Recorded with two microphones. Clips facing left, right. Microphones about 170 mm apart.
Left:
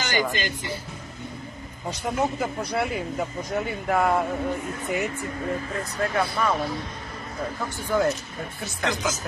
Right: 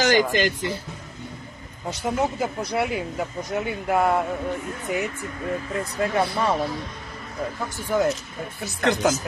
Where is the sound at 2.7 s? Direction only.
10° right (ahead or behind).